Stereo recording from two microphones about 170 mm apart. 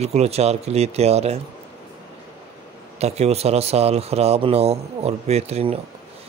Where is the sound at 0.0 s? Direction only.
40° right (ahead or behind).